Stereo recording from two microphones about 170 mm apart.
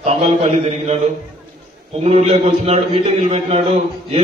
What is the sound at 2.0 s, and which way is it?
A man's voice, 35° right (ahead or behind).